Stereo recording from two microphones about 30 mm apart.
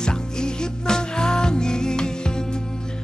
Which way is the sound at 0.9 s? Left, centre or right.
Left.